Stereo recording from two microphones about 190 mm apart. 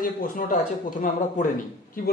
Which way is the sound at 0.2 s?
45° left (ahead or behind).